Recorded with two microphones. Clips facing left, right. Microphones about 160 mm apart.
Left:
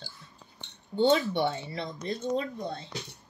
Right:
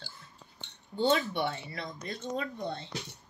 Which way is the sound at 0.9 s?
25° left (ahead or behind).